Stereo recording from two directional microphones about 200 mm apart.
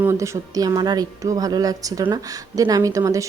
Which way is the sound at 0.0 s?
15° right (ahead or behind).